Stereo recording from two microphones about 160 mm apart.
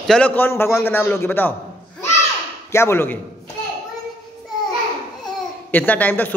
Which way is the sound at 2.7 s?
15° left (ahead or behind).